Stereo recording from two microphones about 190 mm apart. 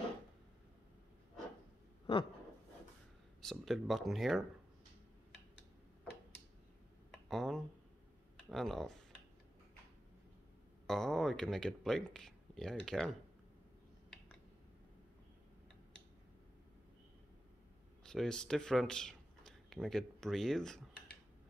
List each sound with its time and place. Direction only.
2.1 s a sound: 30° left (ahead or behind)
3.4 s speech: centre (ahead or behind)
7.1 s a sound: centre (ahead or behind)
8.5 s speech: centre (ahead or behind)
10.9 s speech: centre (ahead or behind)
18.0 s speech: 5° left (ahead or behind)